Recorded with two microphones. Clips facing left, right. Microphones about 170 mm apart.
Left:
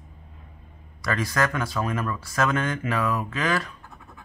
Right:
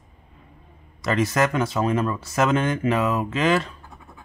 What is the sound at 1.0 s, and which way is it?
Speech, 20° right (ahead or behind).